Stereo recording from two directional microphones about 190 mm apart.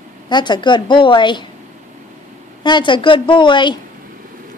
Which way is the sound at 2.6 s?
25° left (ahead or behind).